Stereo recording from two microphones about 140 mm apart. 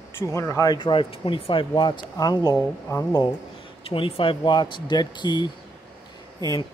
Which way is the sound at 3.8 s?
40° left (ahead or behind).